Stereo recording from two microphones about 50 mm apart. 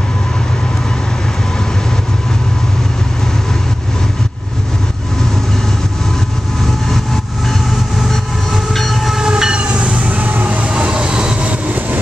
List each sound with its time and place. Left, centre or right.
8.1 s train: centre
9.1 s train: centre
10.2 s train: right